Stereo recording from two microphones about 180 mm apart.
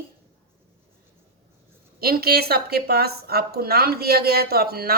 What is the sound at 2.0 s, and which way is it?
A woman's voice, 60° right (ahead or behind).